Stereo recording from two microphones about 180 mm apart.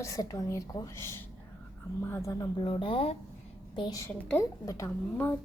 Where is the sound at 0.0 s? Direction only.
20° left (ahead or behind).